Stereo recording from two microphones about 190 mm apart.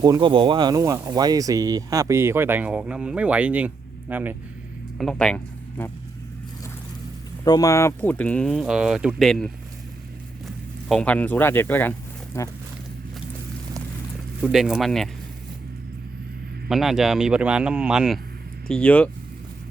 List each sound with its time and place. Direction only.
0.0 s speech: 25° right (ahead or behind)
4.9 s speech: 5° left (ahead or behind)
7.4 s speech: 20° left (ahead or behind)
14.4 s speech: 5° right (ahead or behind)
16.6 s speech: centre (ahead or behind)